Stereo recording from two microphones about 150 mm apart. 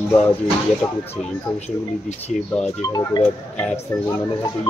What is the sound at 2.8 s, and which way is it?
Speech, 25° left (ahead or behind).